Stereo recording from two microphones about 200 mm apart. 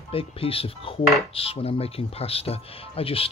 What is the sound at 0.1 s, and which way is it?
Dishes, 30° left (ahead or behind).